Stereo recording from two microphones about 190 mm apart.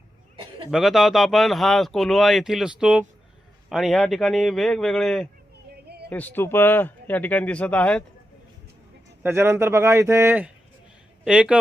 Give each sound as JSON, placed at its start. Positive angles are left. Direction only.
{"t": 0.7, "sound": "speech", "side_deg": 0}
{"t": 9.2, "sound": "speech", "side_deg": -15}